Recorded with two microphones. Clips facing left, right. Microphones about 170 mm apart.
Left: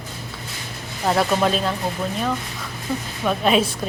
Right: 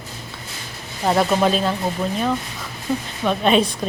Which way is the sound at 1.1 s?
5° right (ahead or behind).